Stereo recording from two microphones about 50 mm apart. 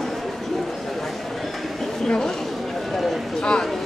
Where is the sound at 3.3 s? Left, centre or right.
Centre.